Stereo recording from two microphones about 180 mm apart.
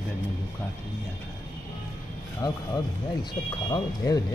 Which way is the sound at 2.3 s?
20° left (ahead or behind).